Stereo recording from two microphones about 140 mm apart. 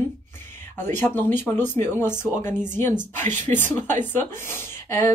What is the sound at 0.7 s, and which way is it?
Speech, 15° left (ahead or behind).